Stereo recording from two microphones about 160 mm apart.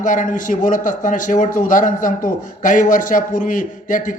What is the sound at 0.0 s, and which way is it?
A man's voice, 55° left (ahead or behind).